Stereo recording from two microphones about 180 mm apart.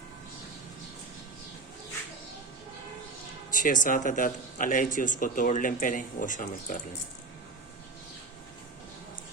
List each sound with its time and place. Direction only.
3.5 s speech: 45° left (ahead or behind)